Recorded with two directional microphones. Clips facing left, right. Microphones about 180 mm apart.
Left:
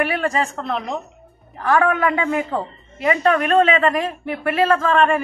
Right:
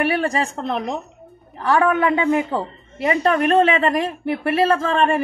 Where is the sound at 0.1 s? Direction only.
30° right (ahead or behind).